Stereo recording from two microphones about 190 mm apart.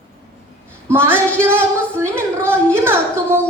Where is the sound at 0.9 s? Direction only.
10° right (ahead or behind).